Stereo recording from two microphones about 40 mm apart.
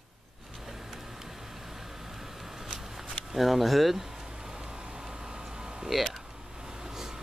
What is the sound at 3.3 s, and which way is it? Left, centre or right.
Speech, centre.